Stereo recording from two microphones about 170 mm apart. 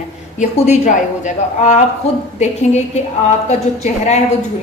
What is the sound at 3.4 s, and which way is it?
Speech, 40° left (ahead or behind).